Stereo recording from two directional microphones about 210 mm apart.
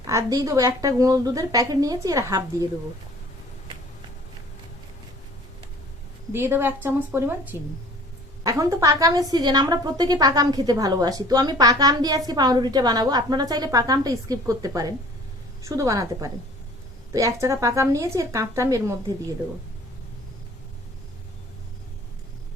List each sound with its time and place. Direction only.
0.1 s a woman's voice: 15° right (ahead or behind)
6.3 s a woman's voice: 10° right (ahead or behind)